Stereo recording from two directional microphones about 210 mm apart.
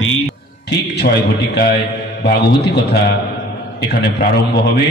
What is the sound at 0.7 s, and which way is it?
A man's voice, 55° left (ahead or behind).